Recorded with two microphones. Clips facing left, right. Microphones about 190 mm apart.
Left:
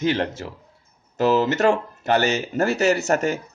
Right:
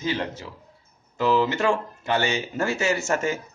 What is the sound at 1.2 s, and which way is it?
Speech, 40° left (ahead or behind).